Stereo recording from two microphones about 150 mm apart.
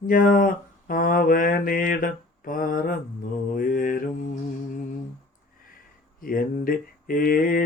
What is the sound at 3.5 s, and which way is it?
Mantra, 65° left (ahead or behind).